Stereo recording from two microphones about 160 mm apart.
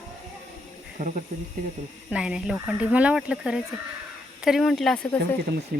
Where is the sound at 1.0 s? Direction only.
50° right (ahead or behind).